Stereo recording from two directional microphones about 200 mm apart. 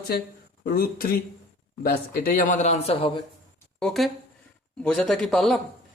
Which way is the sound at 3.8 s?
Centre (ahead or behind).